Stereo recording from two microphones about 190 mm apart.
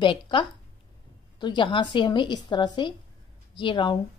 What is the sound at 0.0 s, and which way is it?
A woman's voice, 25° left (ahead or behind).